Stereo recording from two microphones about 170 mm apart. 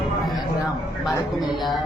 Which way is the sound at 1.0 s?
Centre (ahead or behind).